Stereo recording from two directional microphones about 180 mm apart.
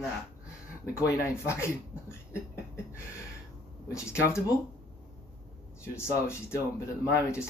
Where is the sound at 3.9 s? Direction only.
15° left (ahead or behind).